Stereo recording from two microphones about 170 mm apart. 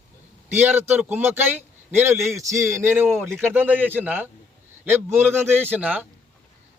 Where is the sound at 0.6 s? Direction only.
10° right (ahead or behind).